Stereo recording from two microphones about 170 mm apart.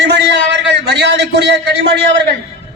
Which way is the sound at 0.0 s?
90° right.